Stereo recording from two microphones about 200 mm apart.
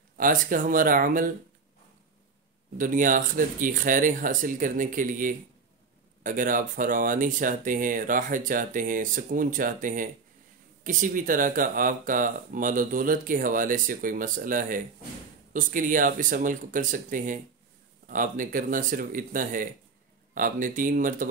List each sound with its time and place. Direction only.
0.2 s speech: 40° right (ahead or behind)
2.8 s speech: 40° right (ahead or behind)